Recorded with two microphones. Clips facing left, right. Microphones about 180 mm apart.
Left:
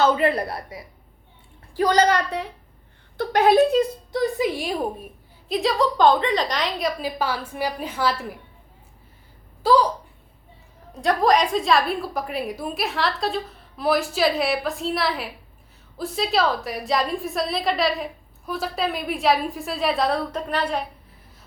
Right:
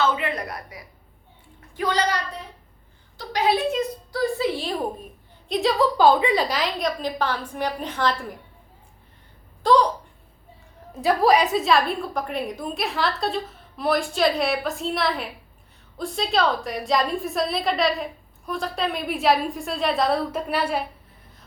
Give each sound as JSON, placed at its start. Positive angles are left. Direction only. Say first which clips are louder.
{"t": 0.0, "sound": "a woman's voice", "louder": "left 5 dB", "side_deg": 35}
{"t": 1.7, "sound": "a woman's voice", "louder": "left 6 dB", "side_deg": 40}
{"t": 2.1, "sound": "a woman's voice", "louder": "left 6 dB", "side_deg": 75}
{"t": 3.2, "sound": "a woman's voice", "louder": "left 5 dB", "side_deg": 50}
{"t": 3.7, "sound": "a woman's voice", "louder": "left 5 dB", "side_deg": 25}
{"t": 9.6, "sound": "a woman's voice", "louder": "even", "side_deg": 5}
{"t": 10.9, "sound": "a woman's voice", "louder": "right 1 dB", "side_deg": -5}